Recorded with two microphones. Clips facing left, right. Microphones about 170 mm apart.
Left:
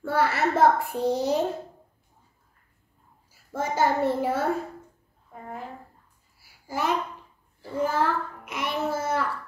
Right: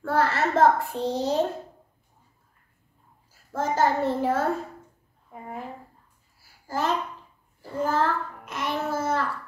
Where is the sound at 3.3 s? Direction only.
10° left (ahead or behind).